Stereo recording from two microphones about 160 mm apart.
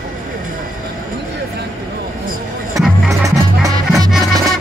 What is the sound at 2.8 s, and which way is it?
Music, centre (ahead or behind).